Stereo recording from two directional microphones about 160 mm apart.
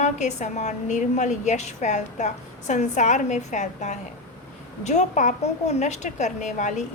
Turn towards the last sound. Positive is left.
turn(degrees=50)  # may be behind; listen again after turning